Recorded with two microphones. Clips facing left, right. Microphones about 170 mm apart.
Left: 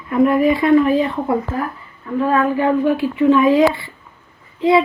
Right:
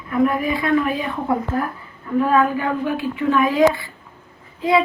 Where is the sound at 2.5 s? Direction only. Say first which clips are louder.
Left 6 dB; 30° left (ahead or behind).